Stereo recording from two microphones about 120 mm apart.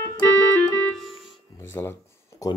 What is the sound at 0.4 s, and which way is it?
Keyboard, 20° left (ahead or behind).